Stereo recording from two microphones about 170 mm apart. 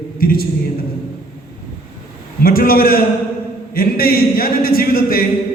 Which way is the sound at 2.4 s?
60° left (ahead or behind).